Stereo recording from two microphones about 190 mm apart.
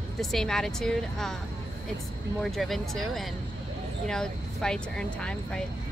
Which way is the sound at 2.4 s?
Centre (ahead or behind).